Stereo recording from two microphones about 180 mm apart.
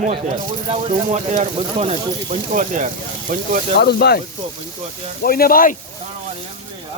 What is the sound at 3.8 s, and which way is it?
Speech, 65° left (ahead or behind).